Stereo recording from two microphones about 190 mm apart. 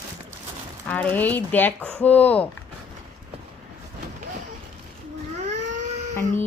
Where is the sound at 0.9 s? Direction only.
10° left (ahead or behind).